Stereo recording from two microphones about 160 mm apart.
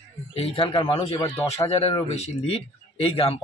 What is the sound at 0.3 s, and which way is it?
Speech, 35° left (ahead or behind).